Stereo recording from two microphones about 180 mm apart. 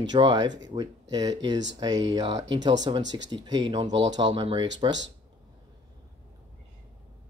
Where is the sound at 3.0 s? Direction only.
90° right.